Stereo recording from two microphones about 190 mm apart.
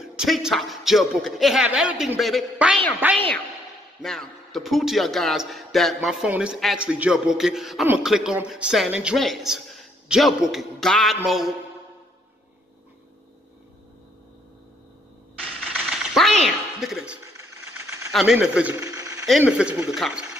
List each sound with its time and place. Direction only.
0.0 s a man's voice: centre (ahead or behind)
4.0 s a man's voice: centre (ahead or behind)
15.6 s a sound: centre (ahead or behind)
18.1 s a man's voice: 5° right (ahead or behind)
18.8 s a sound: 20° right (ahead or behind)
19.4 s a man's voice: 10° right (ahead or behind)